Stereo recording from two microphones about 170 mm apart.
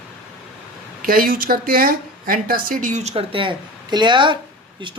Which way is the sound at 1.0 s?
60° right (ahead or behind).